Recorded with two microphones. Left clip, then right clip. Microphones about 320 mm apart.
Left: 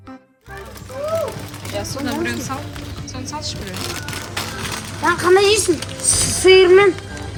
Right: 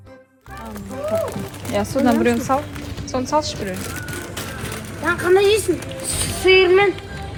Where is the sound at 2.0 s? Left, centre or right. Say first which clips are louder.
Right 7 dB; centre.